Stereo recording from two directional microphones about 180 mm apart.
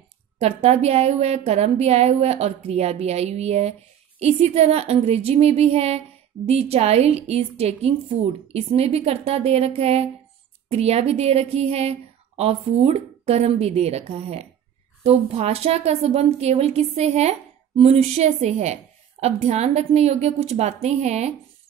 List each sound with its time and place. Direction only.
0.4 s a woman's voice: 35° right (ahead or behind)